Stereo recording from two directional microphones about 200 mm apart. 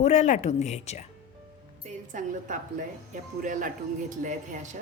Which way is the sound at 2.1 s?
40° right (ahead or behind).